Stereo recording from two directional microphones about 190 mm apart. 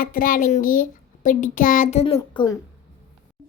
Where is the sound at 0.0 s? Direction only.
45° left (ahead or behind).